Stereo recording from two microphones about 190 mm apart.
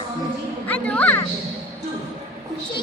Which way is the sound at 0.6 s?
10° left (ahead or behind).